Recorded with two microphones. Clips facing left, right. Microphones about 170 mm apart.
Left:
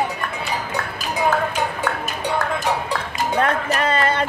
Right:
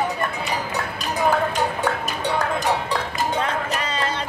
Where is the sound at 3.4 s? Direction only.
55° left (ahead or behind).